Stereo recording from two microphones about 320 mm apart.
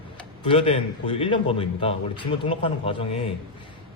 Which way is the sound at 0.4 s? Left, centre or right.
Centre.